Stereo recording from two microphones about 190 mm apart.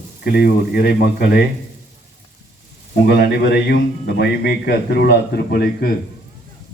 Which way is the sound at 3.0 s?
55° left (ahead or behind).